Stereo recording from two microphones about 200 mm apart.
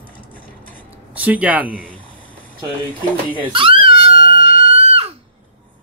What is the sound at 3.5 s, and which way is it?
Screaming, 25° right (ahead or behind).